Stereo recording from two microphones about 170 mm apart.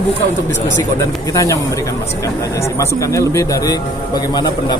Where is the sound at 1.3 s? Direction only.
20° left (ahead or behind).